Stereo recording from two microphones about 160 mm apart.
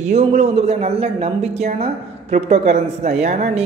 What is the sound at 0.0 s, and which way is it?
A man's voice, 45° right (ahead or behind).